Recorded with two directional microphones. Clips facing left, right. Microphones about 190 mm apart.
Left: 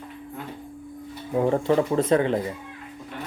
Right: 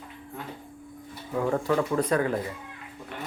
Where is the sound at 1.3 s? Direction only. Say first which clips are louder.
Left 4 dB; 25° left (ahead or behind).